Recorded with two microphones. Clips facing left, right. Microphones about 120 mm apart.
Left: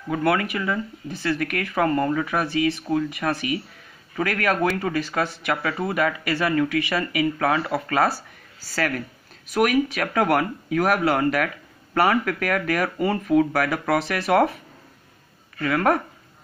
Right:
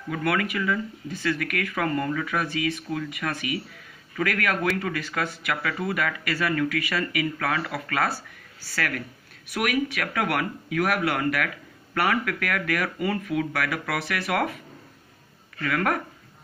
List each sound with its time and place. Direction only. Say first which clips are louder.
0.1 s speech: left 4 dB; 30° left (ahead or behind)
15.6 s speech: left 5 dB; 30° left (ahead or behind)